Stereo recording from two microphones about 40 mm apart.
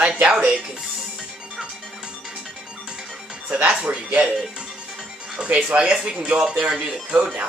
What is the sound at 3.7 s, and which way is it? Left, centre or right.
Speech, right.